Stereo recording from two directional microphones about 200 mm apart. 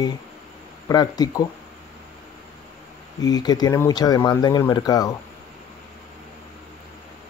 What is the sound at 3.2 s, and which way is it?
Speech, 20° left (ahead or behind).